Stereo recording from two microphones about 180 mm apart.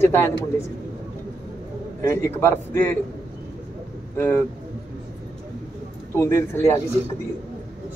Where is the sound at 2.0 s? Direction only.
15° left (ahead or behind).